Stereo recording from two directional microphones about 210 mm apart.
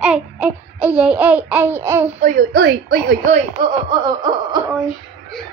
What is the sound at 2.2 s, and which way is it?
A woman's voice, 40° right (ahead or behind).